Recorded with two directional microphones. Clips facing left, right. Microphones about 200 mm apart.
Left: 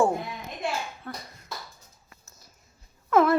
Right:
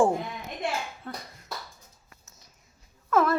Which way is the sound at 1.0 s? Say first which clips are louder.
Even; 25° right (ahead or behind).